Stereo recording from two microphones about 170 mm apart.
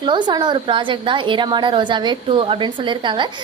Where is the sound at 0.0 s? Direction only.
25° right (ahead or behind).